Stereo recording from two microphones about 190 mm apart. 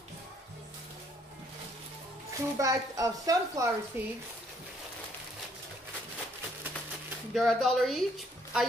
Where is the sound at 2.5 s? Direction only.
15° right (ahead or behind).